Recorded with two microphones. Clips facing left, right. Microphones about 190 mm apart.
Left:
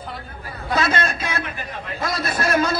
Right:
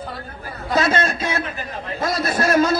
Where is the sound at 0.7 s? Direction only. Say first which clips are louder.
Right 3 dB; 25° right (ahead or behind).